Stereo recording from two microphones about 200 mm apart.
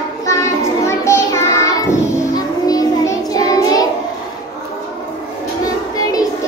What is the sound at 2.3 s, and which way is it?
Music, 20° left (ahead or behind).